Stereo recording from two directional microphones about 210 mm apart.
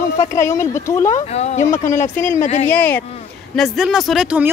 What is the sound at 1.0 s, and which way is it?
Speech, 35° left (ahead or behind).